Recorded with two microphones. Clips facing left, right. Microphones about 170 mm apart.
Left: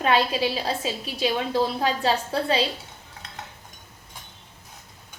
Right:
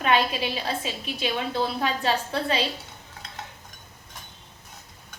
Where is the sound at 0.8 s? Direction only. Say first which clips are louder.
Left 4 dB; 35° left (ahead or behind).